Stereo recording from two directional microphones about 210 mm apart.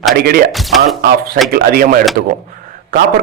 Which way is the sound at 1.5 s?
45° right (ahead or behind).